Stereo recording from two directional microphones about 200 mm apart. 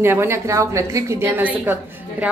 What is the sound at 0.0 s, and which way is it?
A woman's voice, 10° right (ahead or behind).